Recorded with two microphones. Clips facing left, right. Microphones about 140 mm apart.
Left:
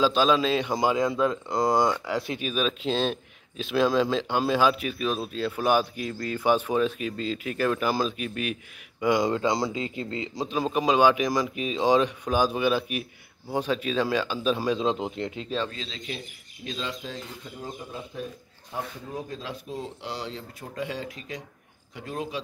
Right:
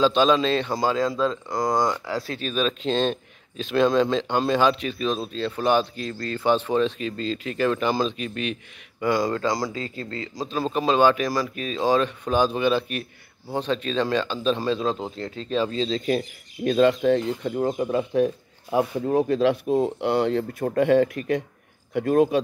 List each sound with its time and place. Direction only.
0.0 s speech: 5° left (ahead or behind)
9.0 s speech: 15° left (ahead or behind)
15.7 s speech: 30° right (ahead or behind)
16.6 s speech: 55° right (ahead or behind)